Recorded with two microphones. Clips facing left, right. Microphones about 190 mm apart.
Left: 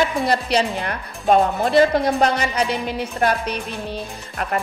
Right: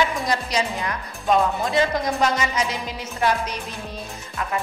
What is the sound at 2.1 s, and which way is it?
Music, 55° left (ahead or behind).